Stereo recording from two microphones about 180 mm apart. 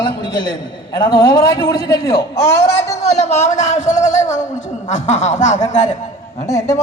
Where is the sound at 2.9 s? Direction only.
40° left (ahead or behind).